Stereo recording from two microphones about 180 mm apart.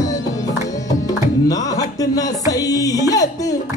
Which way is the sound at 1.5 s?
20° left (ahead or behind).